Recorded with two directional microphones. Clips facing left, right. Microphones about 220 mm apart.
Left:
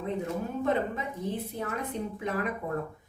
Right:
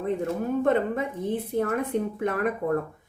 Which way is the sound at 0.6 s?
55° right (ahead or behind).